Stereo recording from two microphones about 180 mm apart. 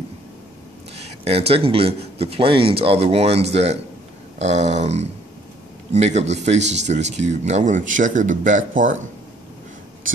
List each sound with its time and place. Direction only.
0.9 s speech: 35° right (ahead or behind)